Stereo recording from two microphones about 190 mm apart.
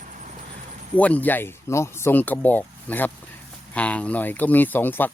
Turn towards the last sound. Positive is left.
turn(degrees=10)  # may be behind; listen again after turning